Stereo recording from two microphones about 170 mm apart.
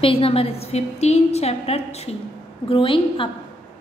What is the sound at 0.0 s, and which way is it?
A woman's voice, 35° left (ahead or behind).